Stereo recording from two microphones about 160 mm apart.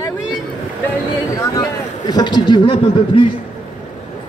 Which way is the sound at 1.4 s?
20° left (ahead or behind).